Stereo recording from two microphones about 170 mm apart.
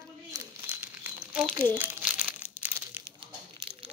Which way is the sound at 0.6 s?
10° right (ahead or behind).